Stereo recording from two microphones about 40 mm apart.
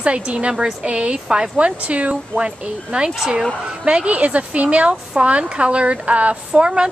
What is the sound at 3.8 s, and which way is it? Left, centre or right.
A woman's voice, right.